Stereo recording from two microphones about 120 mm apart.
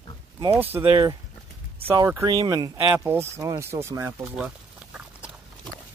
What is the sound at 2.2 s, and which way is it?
Speech, 35° right (ahead or behind).